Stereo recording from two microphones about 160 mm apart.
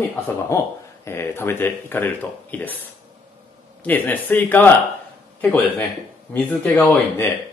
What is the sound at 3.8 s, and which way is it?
Speech, 10° left (ahead or behind).